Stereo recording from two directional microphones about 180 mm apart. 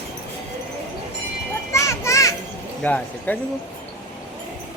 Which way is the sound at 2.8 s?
10° left (ahead or behind).